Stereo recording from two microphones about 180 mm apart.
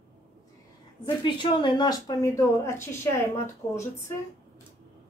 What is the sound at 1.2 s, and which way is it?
A woman's voice, 25° left (ahead or behind).